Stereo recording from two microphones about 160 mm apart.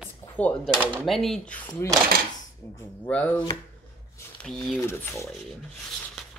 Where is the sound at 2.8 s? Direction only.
10° left (ahead or behind).